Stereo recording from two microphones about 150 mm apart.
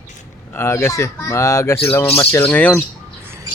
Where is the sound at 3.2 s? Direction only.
15° right (ahead or behind).